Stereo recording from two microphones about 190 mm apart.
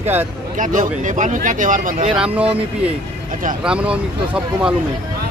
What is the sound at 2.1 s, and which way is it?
Speech, 5° right (ahead or behind).